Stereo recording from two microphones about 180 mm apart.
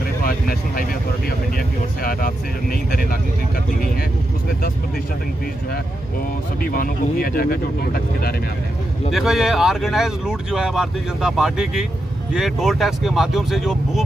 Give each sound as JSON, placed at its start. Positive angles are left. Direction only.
{"t": 2.0, "sound": "speech", "side_deg": 55}
{"t": 6.6, "sound": "speech", "side_deg": 55}
{"t": 9.1, "sound": "speech", "side_deg": 0}